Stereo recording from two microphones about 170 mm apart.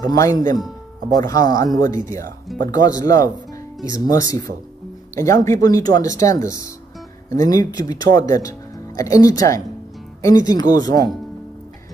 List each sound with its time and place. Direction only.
0.0 s speech: 20° left (ahead or behind)